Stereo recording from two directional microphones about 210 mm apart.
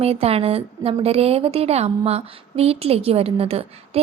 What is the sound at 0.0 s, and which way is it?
A woman's voice, 30° right (ahead or behind).